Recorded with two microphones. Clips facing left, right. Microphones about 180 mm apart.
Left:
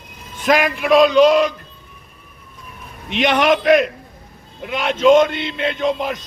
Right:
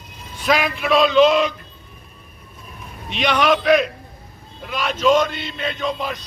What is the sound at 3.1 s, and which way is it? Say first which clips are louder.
Speech: left 3 dB; 50° left (ahead or behind).